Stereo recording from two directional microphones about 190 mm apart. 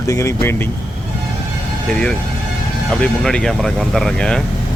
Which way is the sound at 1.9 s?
5° left (ahead or behind).